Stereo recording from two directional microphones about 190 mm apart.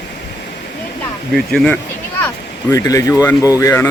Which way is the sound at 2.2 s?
20° left (ahead or behind).